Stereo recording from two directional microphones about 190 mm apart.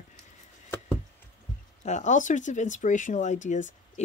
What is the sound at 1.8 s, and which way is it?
Speech, 40° left (ahead or behind).